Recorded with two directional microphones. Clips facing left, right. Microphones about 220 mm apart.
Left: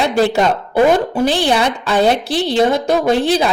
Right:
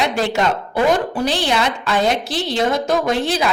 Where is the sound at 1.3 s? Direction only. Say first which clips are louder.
Left 4 dB; 30° left (ahead or behind).